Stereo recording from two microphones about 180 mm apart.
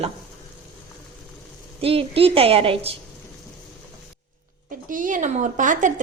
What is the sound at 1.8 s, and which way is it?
A woman's voice, 30° right (ahead or behind).